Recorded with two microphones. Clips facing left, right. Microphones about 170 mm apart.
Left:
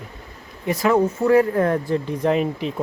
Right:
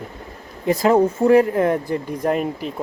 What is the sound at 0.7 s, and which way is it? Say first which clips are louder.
A man's voice: right 3 dB; 30° right (ahead or behind).